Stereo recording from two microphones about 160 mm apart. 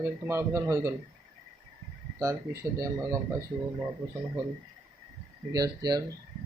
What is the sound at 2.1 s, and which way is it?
Speech, 15° right (ahead or behind).